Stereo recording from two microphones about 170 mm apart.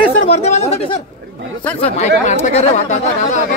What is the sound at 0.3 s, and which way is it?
Speech, 40° left (ahead or behind).